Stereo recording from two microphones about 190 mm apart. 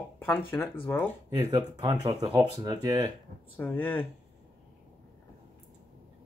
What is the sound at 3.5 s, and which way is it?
Speech, 10° left (ahead or behind).